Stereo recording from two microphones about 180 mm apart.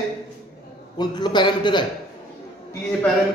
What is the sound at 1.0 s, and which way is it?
Speech, 25° left (ahead or behind).